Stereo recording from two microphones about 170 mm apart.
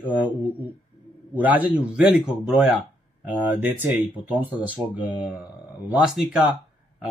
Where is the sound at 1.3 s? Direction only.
10° right (ahead or behind).